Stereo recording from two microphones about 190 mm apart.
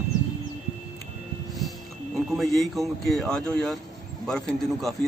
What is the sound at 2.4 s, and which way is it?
A man's voice, centre (ahead or behind).